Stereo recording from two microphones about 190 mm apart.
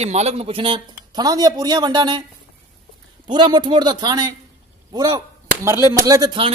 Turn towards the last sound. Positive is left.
turn(degrees=-25)  # may be behind; listen again after turning